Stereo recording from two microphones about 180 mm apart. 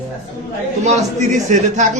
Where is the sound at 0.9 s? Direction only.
40° right (ahead or behind).